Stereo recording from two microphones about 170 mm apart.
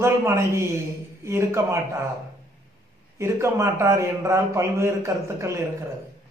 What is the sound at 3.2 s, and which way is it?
A man's voice, 15° right (ahead or behind).